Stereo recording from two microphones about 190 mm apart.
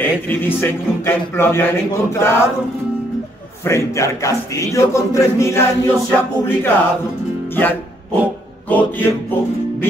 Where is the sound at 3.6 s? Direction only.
15° left (ahead or behind).